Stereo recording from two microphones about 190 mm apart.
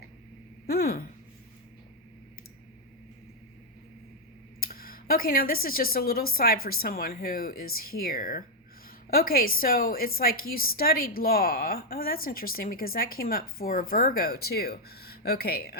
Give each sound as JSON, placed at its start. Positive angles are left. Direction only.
{"t": 0.7, "sound": "speech", "side_deg": 55}
{"t": 4.6, "sound": "a sound", "side_deg": 50}
{"t": 5.6, "sound": "a woman's voice", "side_deg": 50}